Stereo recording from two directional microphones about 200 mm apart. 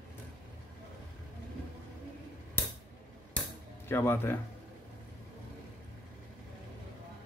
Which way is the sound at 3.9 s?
10° left (ahead or behind).